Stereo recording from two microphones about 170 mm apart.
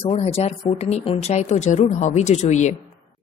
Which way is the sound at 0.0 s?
35° left (ahead or behind).